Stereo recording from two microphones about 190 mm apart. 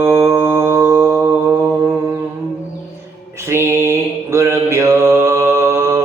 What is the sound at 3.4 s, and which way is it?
Mantra, 15° right (ahead or behind).